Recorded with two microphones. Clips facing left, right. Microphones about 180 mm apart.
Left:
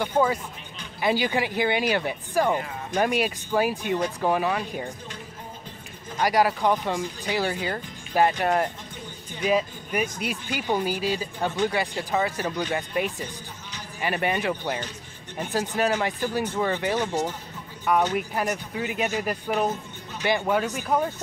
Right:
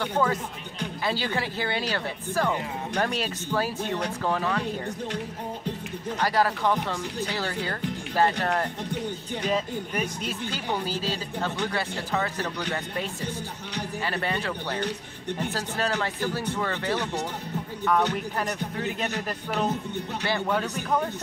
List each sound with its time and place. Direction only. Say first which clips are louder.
0.0 s speech: left 2 dB; 15° left (ahead or behind)
6.2 s speech: left 3 dB; 15° left (ahead or behind)